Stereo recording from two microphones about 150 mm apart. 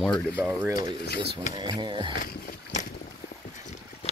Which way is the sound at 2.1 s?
65° left (ahead or behind).